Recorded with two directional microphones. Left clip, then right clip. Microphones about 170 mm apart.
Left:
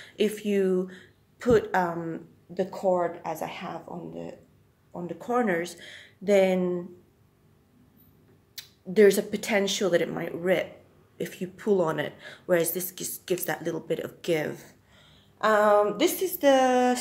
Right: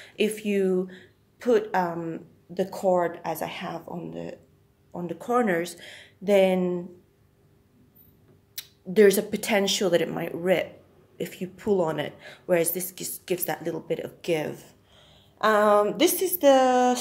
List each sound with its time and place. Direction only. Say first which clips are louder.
0.0 s speech: right 1 dB; 10° right (ahead or behind)
2.5 s speech: right 2 dB; 20° right (ahead or behind)
8.6 s a sound: right 2 dB; 20° right (ahead or behind)
8.9 s speech: right 1 dB; 20° right (ahead or behind)
11.1 s speech: even; 5° right (ahead or behind)
15.0 s speech: right 2 dB; 20° right (ahead or behind)